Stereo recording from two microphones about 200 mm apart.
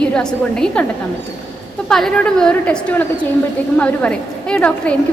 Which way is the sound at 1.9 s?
Centre (ahead or behind).